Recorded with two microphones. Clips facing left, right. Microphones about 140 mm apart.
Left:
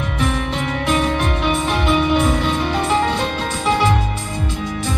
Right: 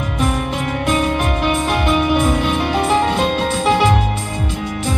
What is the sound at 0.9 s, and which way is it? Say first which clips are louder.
Music: even; 5° right (ahead or behind).